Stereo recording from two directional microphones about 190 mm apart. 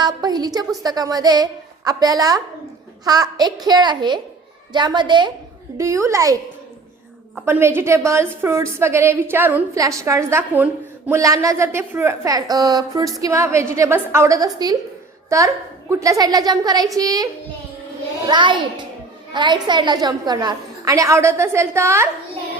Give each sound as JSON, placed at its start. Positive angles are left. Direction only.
{"t": 0.0, "sound": "a child's voice", "side_deg": -20}
{"t": 7.4, "sound": "a woman's voice", "side_deg": -10}
{"t": 18.3, "sound": "a child's voice", "side_deg": -25}